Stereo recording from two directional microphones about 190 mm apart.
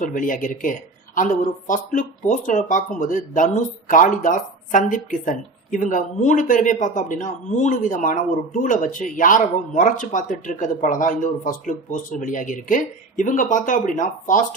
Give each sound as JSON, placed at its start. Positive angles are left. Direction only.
{"t": 0.0, "sound": "speech", "side_deg": 45}